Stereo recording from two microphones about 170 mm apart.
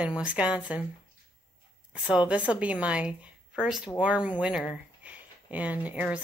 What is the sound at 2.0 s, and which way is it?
A woman's voice, 5° right (ahead or behind).